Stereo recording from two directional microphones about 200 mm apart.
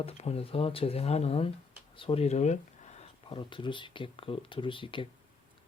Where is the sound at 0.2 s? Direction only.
30° left (ahead or behind).